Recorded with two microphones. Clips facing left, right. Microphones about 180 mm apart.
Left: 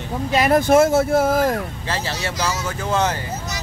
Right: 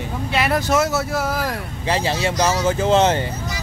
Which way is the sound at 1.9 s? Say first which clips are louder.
Right 6 dB; 15° right (ahead or behind).